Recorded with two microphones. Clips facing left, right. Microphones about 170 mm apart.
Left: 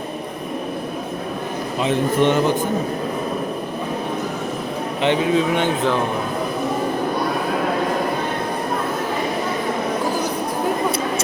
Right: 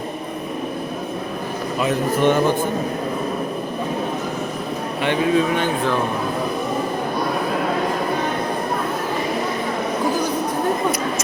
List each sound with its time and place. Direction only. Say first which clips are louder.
1.8 s speech: left 1 dB; 25° left (ahead or behind)
5.0 s speech: even; 20° left (ahead or behind)